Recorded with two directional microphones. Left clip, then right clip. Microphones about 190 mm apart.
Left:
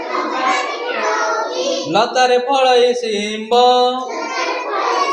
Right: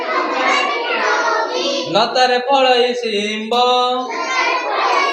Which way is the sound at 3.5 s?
40° left (ahead or behind).